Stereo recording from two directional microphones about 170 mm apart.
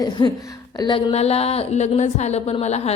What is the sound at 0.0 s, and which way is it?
A woman's voice, 25° left (ahead or behind).